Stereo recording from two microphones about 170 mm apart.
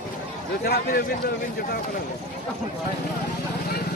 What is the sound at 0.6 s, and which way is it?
Speech, 60° left (ahead or behind).